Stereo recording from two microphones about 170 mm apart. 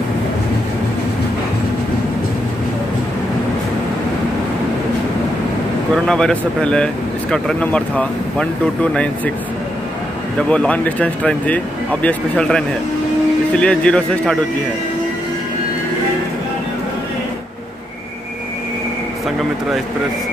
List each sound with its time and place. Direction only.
6.0 s speech: 5° left (ahead or behind)
10.5 s speech: 5° left (ahead or behind)